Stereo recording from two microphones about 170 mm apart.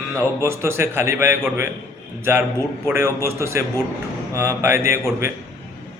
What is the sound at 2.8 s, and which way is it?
A man's voice, 15° right (ahead or behind).